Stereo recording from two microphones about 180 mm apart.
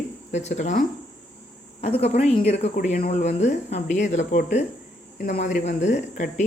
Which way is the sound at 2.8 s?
50° left (ahead or behind).